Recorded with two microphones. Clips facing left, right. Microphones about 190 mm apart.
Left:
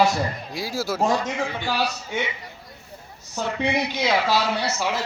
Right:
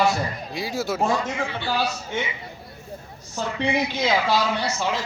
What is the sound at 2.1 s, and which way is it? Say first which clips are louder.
Speech: left 2 dB; 10° left (ahead or behind).